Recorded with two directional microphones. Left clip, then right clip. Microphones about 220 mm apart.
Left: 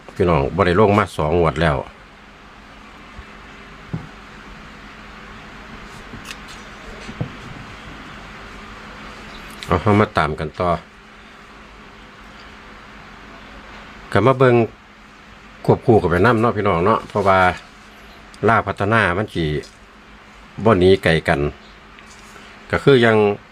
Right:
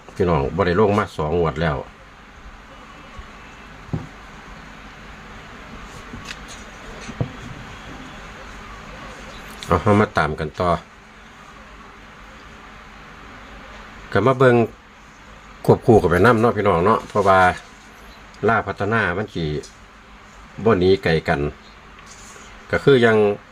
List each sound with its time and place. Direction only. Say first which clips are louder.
0.2 s speech: left 3 dB; 10° left (ahead or behind)
7.2 s a sound: right 3 dB; 40° right (ahead or behind)
9.6 s speech: even; centre (ahead or behind)
14.1 s speech: left 1 dB; 15° left (ahead or behind)
20.7 s speech: left 3 dB; 20° left (ahead or behind)
22.7 s speech: left 1 dB; 15° left (ahead or behind)